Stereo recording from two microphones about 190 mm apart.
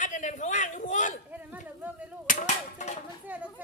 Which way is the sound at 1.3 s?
10° right (ahead or behind).